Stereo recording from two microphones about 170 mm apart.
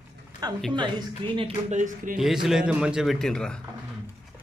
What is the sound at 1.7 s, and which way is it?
Speech, 50° right (ahead or behind).